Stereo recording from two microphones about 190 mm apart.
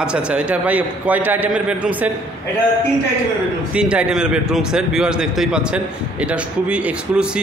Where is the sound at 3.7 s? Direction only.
5° right (ahead or behind).